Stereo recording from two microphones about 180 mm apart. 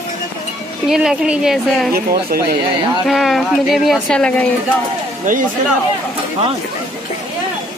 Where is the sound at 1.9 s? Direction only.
55° right (ahead or behind).